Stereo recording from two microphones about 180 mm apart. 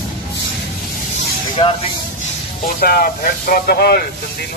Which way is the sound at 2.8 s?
55° left (ahead or behind).